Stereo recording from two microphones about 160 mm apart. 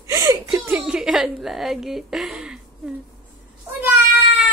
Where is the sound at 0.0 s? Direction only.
20° right (ahead or behind).